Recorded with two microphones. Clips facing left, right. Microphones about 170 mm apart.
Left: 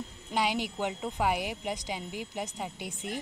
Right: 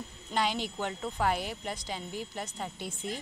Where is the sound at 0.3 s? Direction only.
10° left (ahead or behind).